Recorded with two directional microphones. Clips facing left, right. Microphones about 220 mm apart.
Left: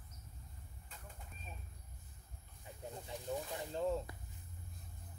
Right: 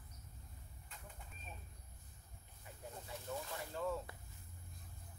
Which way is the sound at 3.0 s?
15° left (ahead or behind).